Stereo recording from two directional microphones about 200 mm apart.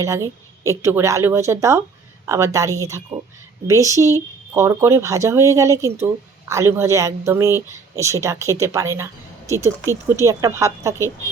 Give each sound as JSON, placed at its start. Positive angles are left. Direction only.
{"t": 0.0, "sound": "speech", "side_deg": -15}